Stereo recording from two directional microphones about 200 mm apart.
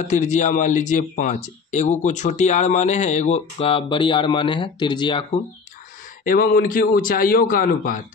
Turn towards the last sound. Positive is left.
turn(degrees=45)  # may be behind; listen again after turning